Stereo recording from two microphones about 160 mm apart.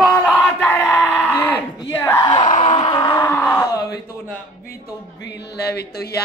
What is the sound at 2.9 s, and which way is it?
Speech, 25° left (ahead or behind).